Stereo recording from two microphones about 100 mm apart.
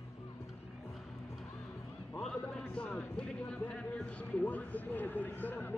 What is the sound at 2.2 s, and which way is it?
Music, 10° left (ahead or behind).